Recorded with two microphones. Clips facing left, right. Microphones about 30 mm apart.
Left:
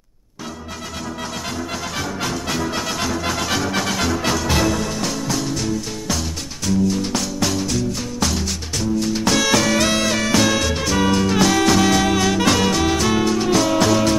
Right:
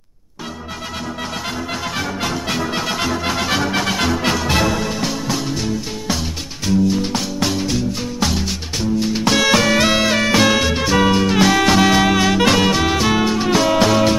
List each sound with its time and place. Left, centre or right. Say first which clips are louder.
2.0 s music: right 1 dB; centre